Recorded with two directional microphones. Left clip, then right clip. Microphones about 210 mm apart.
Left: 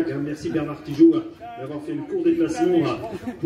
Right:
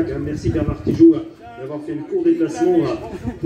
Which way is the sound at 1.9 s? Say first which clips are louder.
Right 1 dB; 50° left (ahead or behind).